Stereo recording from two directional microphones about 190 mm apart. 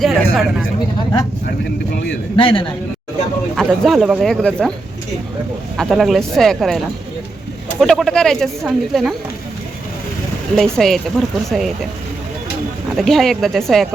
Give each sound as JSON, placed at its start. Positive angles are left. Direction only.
{"t": 0.0, "sound": "speech", "side_deg": 0}
{"t": 2.3, "sound": "a man's voice", "side_deg": 25}
{"t": 3.5, "sound": "speech", "side_deg": 0}
{"t": 5.7, "sound": "speech", "side_deg": 0}
{"t": 10.5, "sound": "speech", "side_deg": 0}
{"t": 13.0, "sound": "speech", "side_deg": 0}